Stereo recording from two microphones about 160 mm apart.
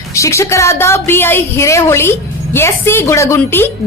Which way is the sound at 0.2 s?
15° left (ahead or behind).